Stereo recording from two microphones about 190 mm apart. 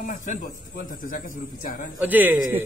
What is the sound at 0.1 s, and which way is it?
A man's voice, 40° left (ahead or behind).